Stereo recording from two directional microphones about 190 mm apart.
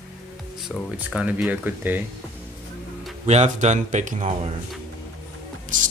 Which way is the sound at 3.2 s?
35° right (ahead or behind).